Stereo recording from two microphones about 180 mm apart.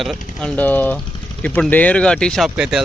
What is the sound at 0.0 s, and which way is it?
Speech, centre (ahead or behind).